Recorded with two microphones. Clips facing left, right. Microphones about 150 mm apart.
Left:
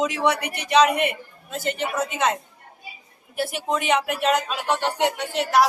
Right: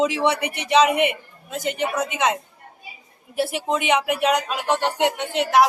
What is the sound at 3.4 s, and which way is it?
Speech, 25° right (ahead or behind).